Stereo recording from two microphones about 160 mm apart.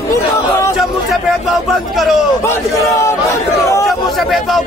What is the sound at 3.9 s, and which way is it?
Speech, centre (ahead or behind).